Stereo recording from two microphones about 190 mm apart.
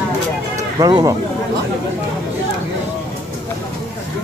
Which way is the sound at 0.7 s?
20° right (ahead or behind).